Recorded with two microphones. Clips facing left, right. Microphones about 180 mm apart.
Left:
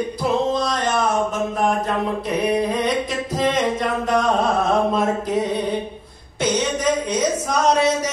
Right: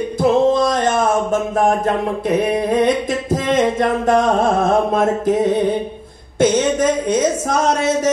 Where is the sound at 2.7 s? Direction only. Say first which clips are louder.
Right 6 dB; 50° right (ahead or behind).